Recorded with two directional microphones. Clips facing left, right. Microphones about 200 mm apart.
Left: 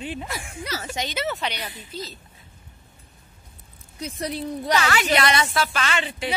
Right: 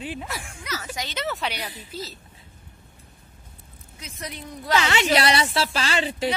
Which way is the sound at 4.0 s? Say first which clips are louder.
Left 8 dB; 35° left (ahead or behind).